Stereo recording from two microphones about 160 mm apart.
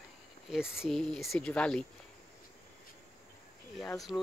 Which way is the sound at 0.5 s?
5° right (ahead or behind).